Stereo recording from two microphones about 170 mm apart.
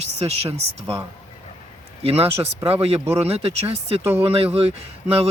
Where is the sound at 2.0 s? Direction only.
35° right (ahead or behind).